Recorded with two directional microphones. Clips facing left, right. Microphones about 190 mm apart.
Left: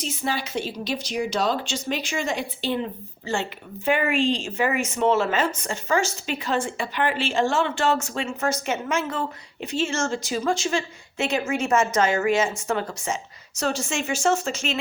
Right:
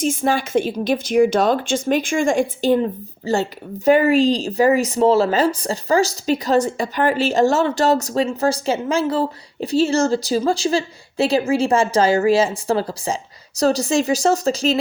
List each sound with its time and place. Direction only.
0.0 s a woman's voice: 50° right (ahead or behind)